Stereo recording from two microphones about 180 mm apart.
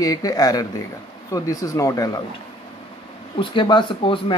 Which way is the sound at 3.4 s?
25° left (ahead or behind).